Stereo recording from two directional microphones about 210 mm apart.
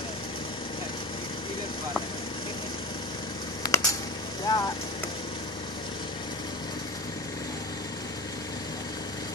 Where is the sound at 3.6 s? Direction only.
20° left (ahead or behind).